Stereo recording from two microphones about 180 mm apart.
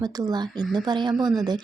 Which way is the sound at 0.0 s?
20° right (ahead or behind).